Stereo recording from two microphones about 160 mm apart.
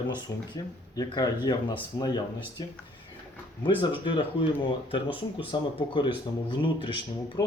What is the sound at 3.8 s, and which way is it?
Speech, 30° left (ahead or behind).